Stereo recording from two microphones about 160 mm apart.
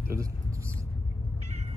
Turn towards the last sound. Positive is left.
turn(degrees=-20)  # may be behind; listen again after turning